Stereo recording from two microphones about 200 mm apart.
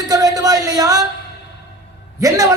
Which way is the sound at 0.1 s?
20° right (ahead or behind).